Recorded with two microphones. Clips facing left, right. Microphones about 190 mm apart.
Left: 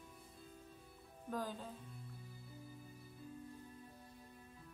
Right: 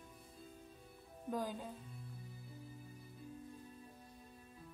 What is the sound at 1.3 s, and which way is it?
Speech, 10° right (ahead or behind).